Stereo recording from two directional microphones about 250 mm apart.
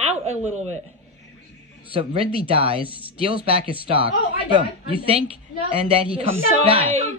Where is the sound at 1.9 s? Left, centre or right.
Right.